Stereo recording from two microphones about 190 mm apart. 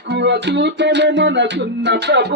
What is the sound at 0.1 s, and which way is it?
Music, 65° right (ahead or behind).